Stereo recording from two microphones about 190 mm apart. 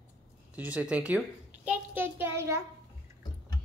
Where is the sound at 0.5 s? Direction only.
5° right (ahead or behind).